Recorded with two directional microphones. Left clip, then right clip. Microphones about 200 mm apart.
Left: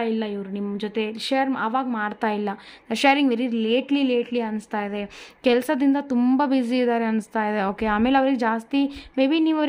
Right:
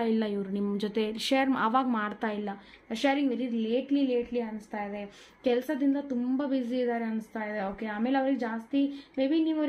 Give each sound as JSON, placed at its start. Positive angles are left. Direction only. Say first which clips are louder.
{"t": 0.0, "sound": "a woman's voice", "louder": "left 4 dB", "side_deg": 10}
{"t": 2.0, "sound": "a woman's voice", "louder": "left 8 dB", "side_deg": 25}
{"t": 2.9, "sound": "a woman's voice", "louder": "left 9 dB", "side_deg": 40}